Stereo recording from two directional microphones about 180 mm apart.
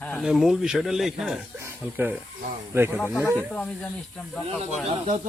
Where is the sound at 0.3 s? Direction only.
Centre (ahead or behind).